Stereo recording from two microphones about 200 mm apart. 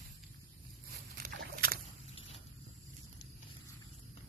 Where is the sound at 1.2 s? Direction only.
45° right (ahead or behind).